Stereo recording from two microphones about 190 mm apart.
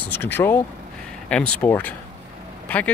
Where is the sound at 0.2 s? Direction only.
10° left (ahead or behind).